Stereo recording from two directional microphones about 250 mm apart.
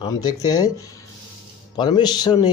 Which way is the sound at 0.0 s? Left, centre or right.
Centre.